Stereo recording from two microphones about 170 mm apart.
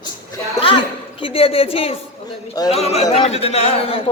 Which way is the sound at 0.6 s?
30° left (ahead or behind).